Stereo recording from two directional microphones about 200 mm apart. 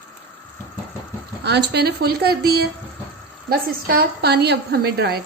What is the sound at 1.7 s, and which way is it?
A woman's voice, 55° right (ahead or behind).